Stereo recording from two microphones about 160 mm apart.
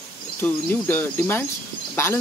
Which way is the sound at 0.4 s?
10° left (ahead or behind).